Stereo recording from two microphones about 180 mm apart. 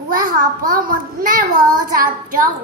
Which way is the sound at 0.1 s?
50° right (ahead or behind).